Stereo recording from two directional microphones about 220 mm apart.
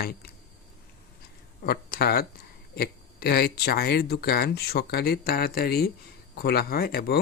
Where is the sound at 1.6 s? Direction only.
45° left (ahead or behind).